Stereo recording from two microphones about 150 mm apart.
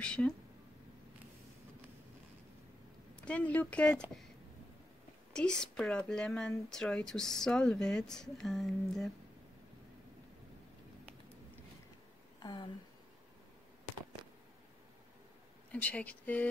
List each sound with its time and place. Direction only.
0.0 s speech: 5° left (ahead or behind)
3.3 s speech: 10° left (ahead or behind)
5.3 s speech: 5° left (ahead or behind)
12.4 s speech: 30° left (ahead or behind)
15.7 s speech: 10° left (ahead or behind)